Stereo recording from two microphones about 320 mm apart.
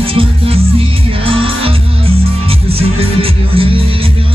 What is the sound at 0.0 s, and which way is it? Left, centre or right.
Music, centre.